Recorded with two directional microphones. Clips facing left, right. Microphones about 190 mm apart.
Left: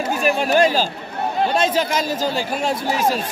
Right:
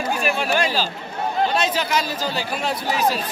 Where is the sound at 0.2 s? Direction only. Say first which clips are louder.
Left 8 dB; 40° left (ahead or behind).